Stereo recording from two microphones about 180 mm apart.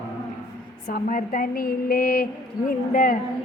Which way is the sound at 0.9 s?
50° left (ahead or behind).